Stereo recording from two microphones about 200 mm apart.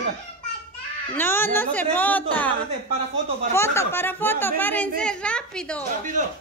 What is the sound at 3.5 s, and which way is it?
Speech, 15° left (ahead or behind).